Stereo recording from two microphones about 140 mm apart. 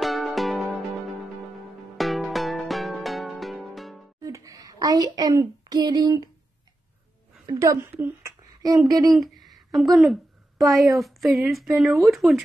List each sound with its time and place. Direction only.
0.0 s music: centre (ahead or behind)
2.0 s music: centre (ahead or behind)
4.2 s speech: 25° right (ahead or behind)
7.4 s speech: 20° right (ahead or behind)
8.6 s speech: 25° right (ahead or behind)
9.1 s a sound: centre (ahead or behind)
10.6 s a woman's voice: centre (ahead or behind)